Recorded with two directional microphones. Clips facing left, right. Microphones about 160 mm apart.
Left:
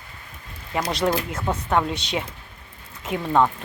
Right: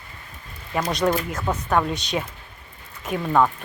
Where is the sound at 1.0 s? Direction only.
10° left (ahead or behind).